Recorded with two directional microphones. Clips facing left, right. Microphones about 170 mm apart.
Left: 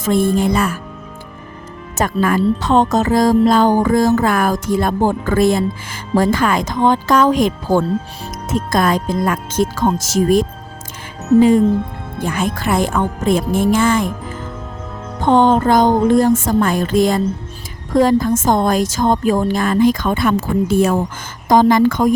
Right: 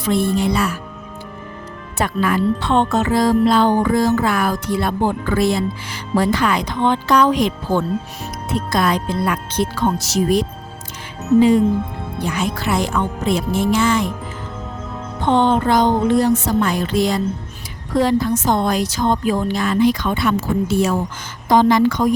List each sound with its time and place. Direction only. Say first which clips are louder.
0.0 s music: left 3 dB; 45° left (ahead or behind)
2.0 s music: left 3 dB; 45° left (ahead or behind)
15.2 s music: left 3 dB; 45° left (ahead or behind)